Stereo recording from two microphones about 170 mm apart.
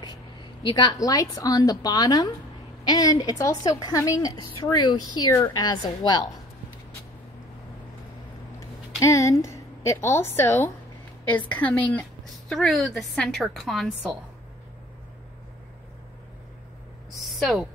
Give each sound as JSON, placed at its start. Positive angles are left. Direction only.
{"t": 0.0, "sound": "a woman's voice", "side_deg": 30}
{"t": 8.5, "sound": "a woman's voice", "side_deg": 20}
{"t": 17.1, "sound": "a sound", "side_deg": 0}